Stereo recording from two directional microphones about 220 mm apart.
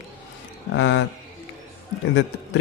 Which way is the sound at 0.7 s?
55° left (ahead or behind).